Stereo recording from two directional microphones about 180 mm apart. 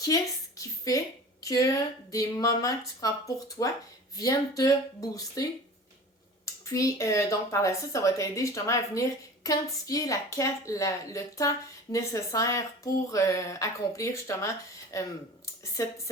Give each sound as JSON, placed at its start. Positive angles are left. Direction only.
{"t": 0.0, "sound": "a woman's voice", "side_deg": 20}